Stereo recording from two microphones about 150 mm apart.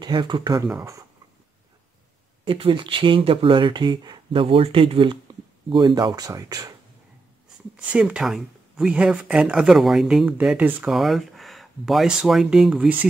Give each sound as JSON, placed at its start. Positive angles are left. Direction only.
{"t": 0.0, "sound": "speech", "side_deg": -30}
{"t": 2.4, "sound": "speech", "side_deg": -35}
{"t": 7.7, "sound": "speech", "side_deg": -10}